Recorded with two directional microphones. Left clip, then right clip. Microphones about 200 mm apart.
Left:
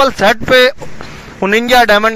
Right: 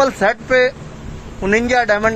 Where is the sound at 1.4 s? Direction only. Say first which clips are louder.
Left 6 dB; 50° left (ahead or behind).